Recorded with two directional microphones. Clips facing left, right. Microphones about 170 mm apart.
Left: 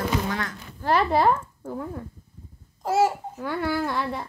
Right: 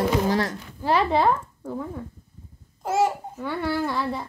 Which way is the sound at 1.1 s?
5° left (ahead or behind).